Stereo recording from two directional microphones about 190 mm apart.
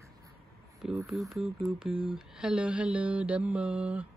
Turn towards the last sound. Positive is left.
turn(degrees=-5)  # may be behind; listen again after turning